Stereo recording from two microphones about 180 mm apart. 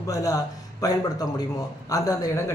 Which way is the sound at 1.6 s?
20° left (ahead or behind).